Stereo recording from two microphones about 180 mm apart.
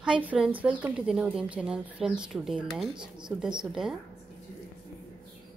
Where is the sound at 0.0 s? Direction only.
5° right (ahead or behind).